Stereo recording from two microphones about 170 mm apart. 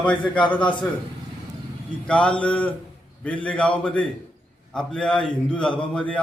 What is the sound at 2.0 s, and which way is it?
A man's voice, 5° left (ahead or behind).